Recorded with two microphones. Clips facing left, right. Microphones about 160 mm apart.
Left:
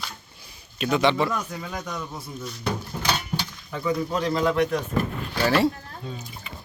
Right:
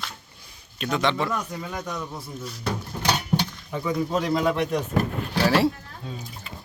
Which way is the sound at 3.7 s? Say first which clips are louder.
Even; 15° right (ahead or behind).